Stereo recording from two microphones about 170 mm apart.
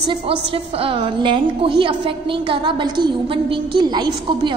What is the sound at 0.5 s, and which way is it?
A woman's voice, 30° right (ahead or behind).